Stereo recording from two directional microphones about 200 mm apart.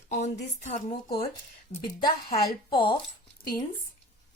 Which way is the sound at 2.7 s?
25° left (ahead or behind).